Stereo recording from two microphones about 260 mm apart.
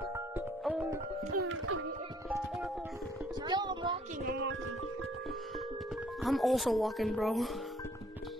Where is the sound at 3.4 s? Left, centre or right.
Centre.